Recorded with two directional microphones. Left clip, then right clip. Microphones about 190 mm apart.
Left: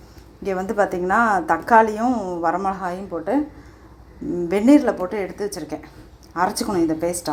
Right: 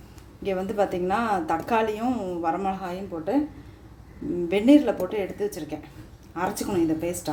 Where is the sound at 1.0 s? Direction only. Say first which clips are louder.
Left 7 dB; 10° left (ahead or behind).